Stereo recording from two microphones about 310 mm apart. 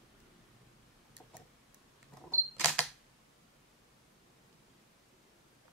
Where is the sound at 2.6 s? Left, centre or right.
Centre.